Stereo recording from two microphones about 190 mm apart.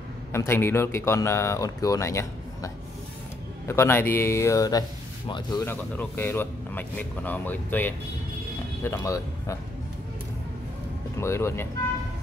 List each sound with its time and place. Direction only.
0.3 s speech: 15° left (ahead or behind)
11.1 s speech: 15° left (ahead or behind)